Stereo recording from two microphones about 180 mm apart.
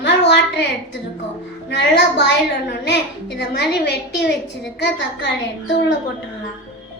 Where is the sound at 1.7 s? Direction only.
75° left (ahead or behind).